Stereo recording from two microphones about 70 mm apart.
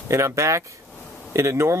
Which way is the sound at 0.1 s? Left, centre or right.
Right.